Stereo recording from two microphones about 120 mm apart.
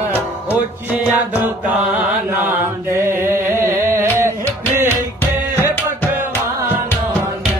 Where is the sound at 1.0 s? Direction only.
15° right (ahead or behind).